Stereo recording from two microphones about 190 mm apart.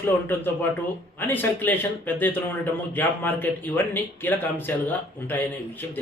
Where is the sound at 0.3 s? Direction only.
10° left (ahead or behind).